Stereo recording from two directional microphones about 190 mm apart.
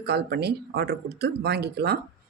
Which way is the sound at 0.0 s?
60° right (ahead or behind).